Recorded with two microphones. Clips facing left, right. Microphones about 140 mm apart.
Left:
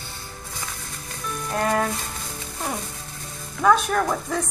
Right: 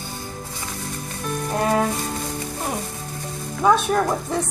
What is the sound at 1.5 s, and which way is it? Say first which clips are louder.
Rattle: right 2 dB; 15° right (ahead or behind).